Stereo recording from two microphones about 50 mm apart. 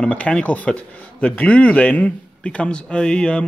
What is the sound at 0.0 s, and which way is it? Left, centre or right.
A man's voice, left.